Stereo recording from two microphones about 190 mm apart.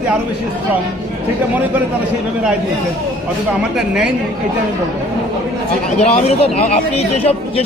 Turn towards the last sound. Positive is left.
turn(degrees=35)  # may be behind; listen again after turning